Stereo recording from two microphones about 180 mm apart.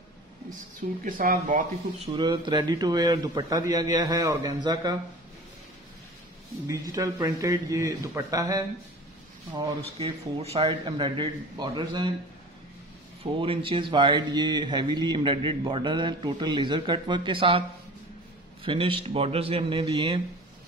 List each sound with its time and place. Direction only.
1.0 s speech: 50° right (ahead or behind)
2.1 s speech: 25° right (ahead or behind)
6.7 s speech: 20° right (ahead or behind)
13.2 s a man's voice: 30° right (ahead or behind)